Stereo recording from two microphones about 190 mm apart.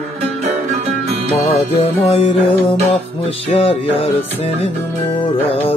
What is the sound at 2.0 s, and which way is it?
Music, 30° left (ahead or behind).